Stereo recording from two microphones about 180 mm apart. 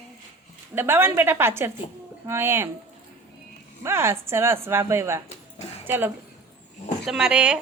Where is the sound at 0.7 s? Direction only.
10° right (ahead or behind).